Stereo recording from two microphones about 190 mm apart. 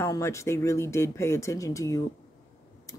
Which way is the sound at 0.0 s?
15° left (ahead or behind).